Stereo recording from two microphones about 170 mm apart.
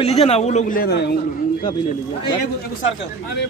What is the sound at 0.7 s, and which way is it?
Speech, 60° left (ahead or behind).